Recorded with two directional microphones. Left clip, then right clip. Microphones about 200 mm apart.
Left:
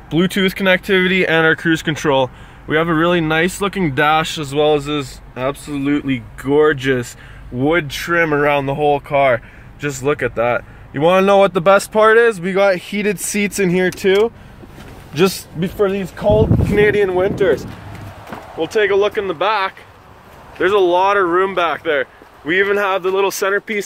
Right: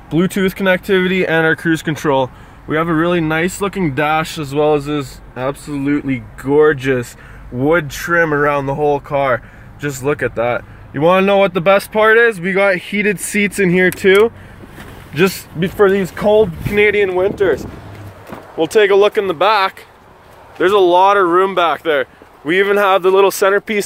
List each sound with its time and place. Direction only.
0.1 s speech: 10° right (ahead or behind)
16.2 s speech: 20° right (ahead or behind)
17.0 s speech: centre (ahead or behind)
18.6 s speech: 40° right (ahead or behind)
20.5 s speech: 20° right (ahead or behind)